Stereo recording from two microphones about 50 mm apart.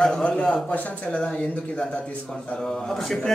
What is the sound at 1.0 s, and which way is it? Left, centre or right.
Speech, centre.